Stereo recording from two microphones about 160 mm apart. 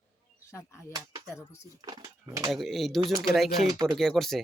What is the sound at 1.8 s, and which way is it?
Speech, 25° right (ahead or behind).